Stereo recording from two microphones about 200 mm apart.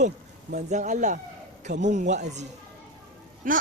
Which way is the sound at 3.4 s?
40° right (ahead or behind).